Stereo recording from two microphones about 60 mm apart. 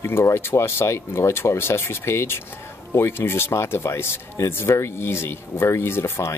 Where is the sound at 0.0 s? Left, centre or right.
Left.